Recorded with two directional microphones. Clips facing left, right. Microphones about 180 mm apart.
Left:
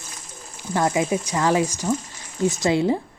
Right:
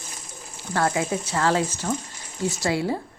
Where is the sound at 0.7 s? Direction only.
20° left (ahead or behind).